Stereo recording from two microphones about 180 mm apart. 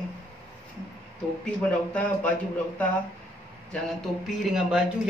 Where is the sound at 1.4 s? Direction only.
5° left (ahead or behind).